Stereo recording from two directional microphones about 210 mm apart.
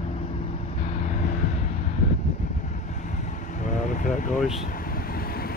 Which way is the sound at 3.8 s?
35° left (ahead or behind).